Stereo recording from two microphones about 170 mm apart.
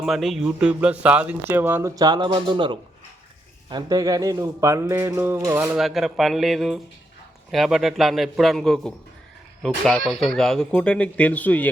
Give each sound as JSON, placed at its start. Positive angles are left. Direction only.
{"t": 0.0, "sound": "speech", "side_deg": 0}
{"t": 5.7, "sound": "speech", "side_deg": 0}